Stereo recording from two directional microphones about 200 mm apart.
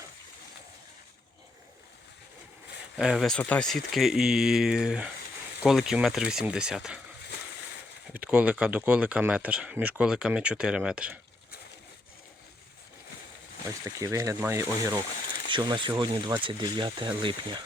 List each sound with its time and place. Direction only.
3.0 s speech: centre (ahead or behind)
8.1 s speech: 5° right (ahead or behind)
13.8 s speech: 15° right (ahead or behind)